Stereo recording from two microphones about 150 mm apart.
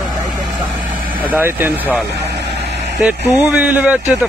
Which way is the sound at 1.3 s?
15° right (ahead or behind).